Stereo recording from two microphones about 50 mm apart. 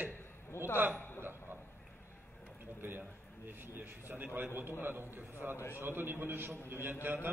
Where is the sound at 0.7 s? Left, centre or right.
Right.